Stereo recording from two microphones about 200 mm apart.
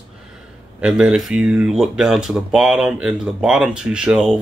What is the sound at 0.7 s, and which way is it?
Speech, 5° right (ahead or behind).